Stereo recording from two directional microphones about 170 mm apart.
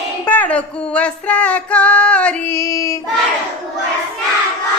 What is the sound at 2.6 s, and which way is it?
Child singing, 20° left (ahead or behind).